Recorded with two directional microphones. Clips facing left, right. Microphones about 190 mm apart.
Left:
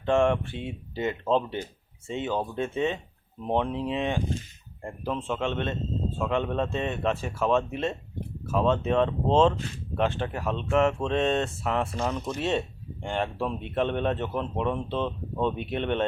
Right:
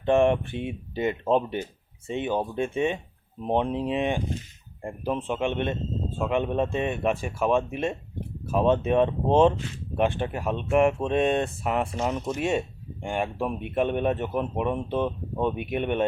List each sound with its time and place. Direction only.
0.0 s speech: 15° right (ahead or behind)